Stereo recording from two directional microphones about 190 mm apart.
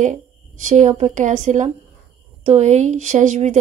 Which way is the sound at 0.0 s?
40° right (ahead or behind).